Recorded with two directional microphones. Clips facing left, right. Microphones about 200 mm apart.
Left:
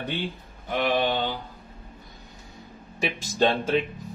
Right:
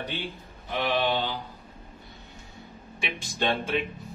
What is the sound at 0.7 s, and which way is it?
Speech, 50° left (ahead or behind).